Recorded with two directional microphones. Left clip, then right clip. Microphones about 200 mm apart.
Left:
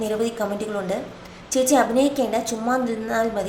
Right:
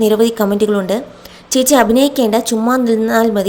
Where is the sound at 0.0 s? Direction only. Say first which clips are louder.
Right 11 dB; 45° right (ahead or behind).